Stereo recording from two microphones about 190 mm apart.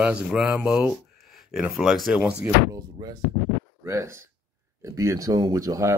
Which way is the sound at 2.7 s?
20° right (ahead or behind).